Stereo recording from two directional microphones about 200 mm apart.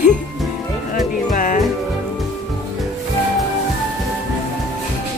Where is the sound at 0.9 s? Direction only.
40° left (ahead or behind).